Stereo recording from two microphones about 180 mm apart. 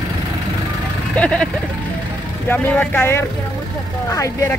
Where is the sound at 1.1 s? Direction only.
5° left (ahead or behind).